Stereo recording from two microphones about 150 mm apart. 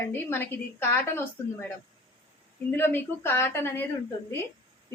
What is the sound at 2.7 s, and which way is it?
A woman's voice, 15° left (ahead or behind).